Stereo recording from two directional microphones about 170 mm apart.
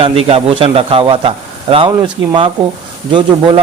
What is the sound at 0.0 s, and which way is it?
A man's voice, 35° right (ahead or behind).